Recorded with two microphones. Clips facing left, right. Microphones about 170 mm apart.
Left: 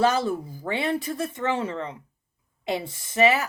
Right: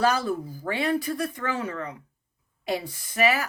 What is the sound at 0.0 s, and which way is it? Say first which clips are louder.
Speech: left 2 dB; 25° left (ahead or behind).